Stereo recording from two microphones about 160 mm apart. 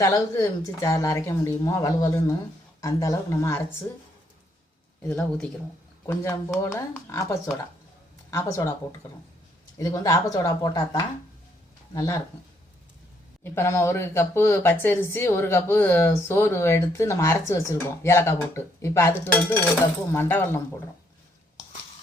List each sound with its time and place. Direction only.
0.0 s speech: 20° left (ahead or behind)
5.0 s speech: 10° left (ahead or behind)
6.1 s speech: 20° left (ahead or behind)
9.7 s speech: 20° left (ahead or behind)
13.4 s speech: 15° left (ahead or behind)